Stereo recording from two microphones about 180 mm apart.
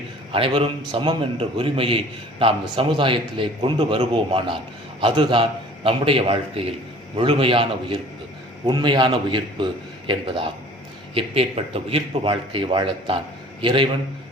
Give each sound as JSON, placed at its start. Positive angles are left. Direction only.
{"t": 0.3, "sound": "a man's voice", "side_deg": -30}